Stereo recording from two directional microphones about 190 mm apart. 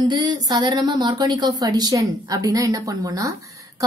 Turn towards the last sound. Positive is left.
turn(degrees=-15)  # may be behind; listen again after turning